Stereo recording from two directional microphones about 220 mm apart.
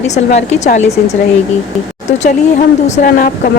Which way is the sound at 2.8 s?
40° left (ahead or behind).